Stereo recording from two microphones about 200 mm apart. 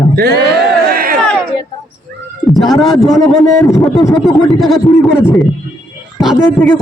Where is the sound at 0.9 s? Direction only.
50° right (ahead or behind).